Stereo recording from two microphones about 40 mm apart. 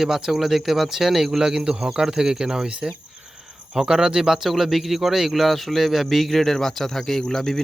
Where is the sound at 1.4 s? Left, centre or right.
Centre.